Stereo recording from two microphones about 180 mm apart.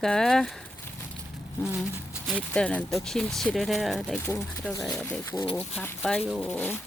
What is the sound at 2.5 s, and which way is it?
Speech, 5° left (ahead or behind).